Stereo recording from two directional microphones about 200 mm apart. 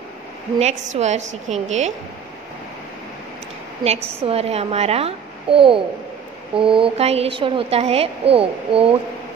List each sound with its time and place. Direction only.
0.6 s a woman's voice: 35° right (ahead or behind)
3.8 s a woman's voice: 30° right (ahead or behind)